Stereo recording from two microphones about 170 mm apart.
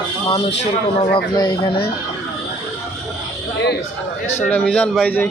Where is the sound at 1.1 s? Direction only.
25° left (ahead or behind).